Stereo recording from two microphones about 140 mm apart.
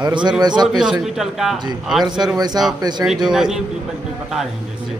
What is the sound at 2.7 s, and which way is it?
Speech, 30° right (ahead or behind).